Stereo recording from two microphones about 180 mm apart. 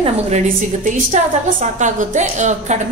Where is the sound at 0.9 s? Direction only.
40° right (ahead or behind).